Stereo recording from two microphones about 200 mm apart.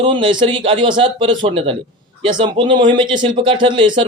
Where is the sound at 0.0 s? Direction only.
25° right (ahead or behind).